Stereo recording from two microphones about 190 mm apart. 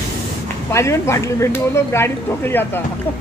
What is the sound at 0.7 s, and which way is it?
Speech, 15° left (ahead or behind).